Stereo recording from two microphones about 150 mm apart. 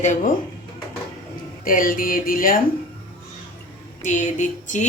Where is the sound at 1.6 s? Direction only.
65° left (ahead or behind).